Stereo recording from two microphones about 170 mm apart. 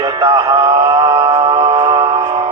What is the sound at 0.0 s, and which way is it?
Music, 20° right (ahead or behind).